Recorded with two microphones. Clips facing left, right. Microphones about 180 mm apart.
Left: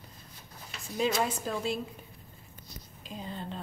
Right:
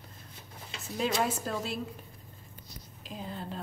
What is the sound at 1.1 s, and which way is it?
Speech, 5° right (ahead or behind).